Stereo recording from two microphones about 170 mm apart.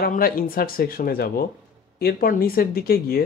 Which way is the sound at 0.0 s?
55° left (ahead or behind).